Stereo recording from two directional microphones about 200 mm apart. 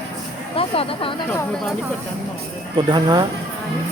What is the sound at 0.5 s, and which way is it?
Speech, 30° left (ahead or behind).